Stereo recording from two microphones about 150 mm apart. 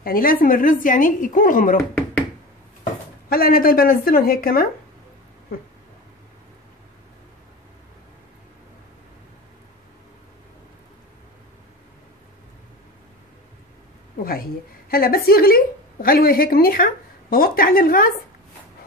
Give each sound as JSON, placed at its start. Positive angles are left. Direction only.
{"t": 0.0, "sound": "speech", "side_deg": 70}
{"t": 3.3, "sound": "a woman's voice", "side_deg": 80}
{"t": 14.2, "sound": "a woman's voice", "side_deg": 80}